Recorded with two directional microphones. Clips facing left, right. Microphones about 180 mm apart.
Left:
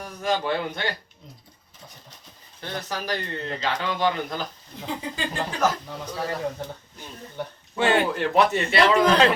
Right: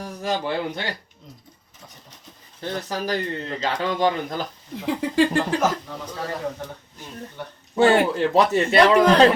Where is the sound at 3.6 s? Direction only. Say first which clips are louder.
Right 3 dB; 45° right (ahead or behind).